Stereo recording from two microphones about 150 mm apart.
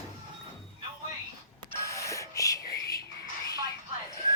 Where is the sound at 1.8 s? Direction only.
20° left (ahead or behind).